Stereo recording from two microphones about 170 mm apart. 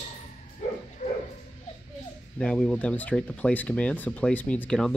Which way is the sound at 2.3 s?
5° left (ahead or behind).